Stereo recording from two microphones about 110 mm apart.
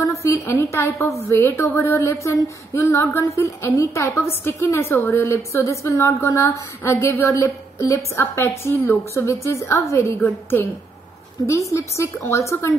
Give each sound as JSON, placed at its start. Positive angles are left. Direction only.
{"t": 0.0, "sound": "a woman's voice", "side_deg": 25}